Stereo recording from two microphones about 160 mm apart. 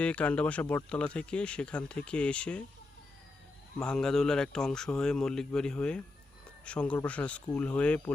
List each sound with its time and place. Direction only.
0.0 s speech: 10° left (ahead or behind)
3.8 s a man's voice: 5° left (ahead or behind)